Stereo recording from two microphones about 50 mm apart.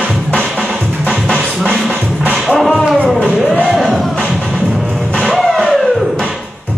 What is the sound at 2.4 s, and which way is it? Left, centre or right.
Music, centre.